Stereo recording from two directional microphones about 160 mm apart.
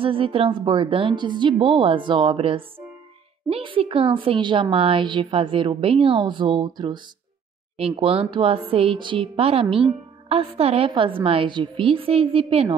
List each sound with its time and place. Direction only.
0.0 s a woman's voice: 35° right (ahead or behind)